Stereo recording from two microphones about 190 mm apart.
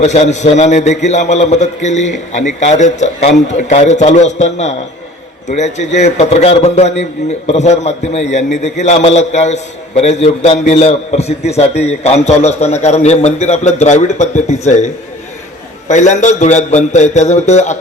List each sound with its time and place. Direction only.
0.0 s a man's voice: 35° left (ahead or behind)
15.9 s a man's voice: 40° left (ahead or behind)